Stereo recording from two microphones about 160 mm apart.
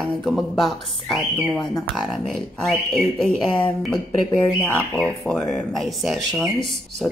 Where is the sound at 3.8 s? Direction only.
5° left (ahead or behind).